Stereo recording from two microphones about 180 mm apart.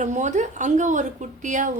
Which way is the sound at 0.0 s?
40° right (ahead or behind).